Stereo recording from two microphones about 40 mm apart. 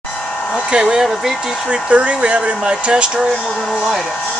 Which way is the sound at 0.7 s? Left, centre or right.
Centre.